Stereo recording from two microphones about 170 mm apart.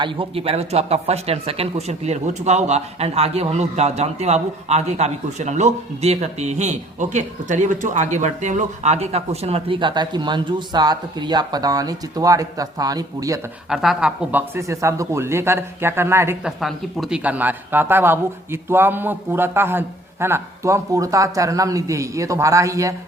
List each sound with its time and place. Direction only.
0.0 s speech: 35° right (ahead or behind)
13.7 s speech: 5° right (ahead or behind)
16.6 s speech: centre (ahead or behind); by 23.0 s 20° right (ahead or behind)